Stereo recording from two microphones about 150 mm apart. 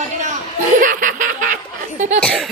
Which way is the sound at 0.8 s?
60° right (ahead or behind).